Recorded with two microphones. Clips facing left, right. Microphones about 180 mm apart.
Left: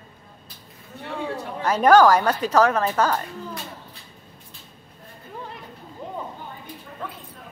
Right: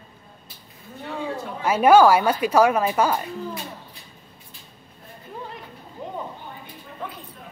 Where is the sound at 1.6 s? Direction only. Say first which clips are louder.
Right 1 dB; 10° right (ahead or behind).